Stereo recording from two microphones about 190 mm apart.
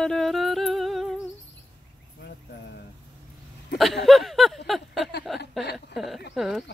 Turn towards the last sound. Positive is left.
turn(degrees=0)  # may be behind; listen again after turning